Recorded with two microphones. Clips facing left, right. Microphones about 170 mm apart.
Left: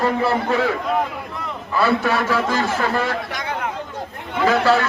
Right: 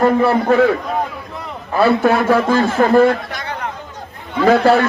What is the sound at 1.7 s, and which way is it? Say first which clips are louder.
A man's voice: right 5 dB; 50° right (ahead or behind).